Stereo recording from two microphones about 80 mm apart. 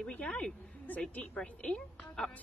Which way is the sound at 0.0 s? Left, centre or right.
Centre.